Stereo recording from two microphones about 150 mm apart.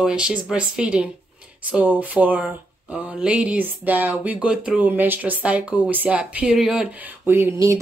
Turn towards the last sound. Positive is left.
turn(degrees=-20)  # may be behind; listen again after turning